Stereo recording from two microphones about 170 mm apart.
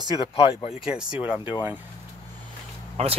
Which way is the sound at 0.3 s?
35° left (ahead or behind).